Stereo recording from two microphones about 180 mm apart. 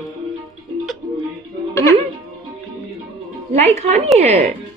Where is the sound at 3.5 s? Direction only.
40° right (ahead or behind).